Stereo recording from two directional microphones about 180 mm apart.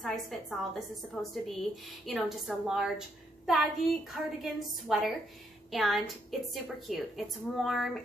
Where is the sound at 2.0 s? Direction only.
Centre (ahead or behind).